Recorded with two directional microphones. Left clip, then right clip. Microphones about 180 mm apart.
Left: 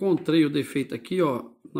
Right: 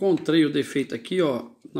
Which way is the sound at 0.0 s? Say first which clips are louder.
Right 1 dB; 55° left (ahead or behind).